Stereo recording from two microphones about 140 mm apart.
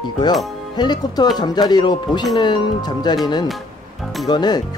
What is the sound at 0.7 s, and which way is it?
Speech, 30° left (ahead or behind).